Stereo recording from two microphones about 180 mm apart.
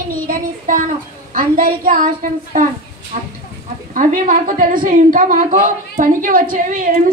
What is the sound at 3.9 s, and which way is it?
Child singing, 50° right (ahead or behind).